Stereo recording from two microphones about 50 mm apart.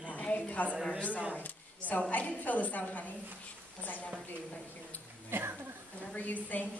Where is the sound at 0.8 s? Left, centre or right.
Left.